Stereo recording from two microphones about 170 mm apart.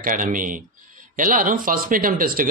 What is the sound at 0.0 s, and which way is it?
Speech, 50° right (ahead or behind).